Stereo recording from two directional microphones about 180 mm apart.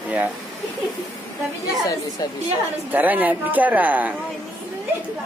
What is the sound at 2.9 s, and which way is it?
Speech, 10° right (ahead or behind).